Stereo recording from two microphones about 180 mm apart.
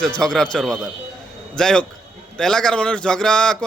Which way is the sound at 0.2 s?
5° left (ahead or behind).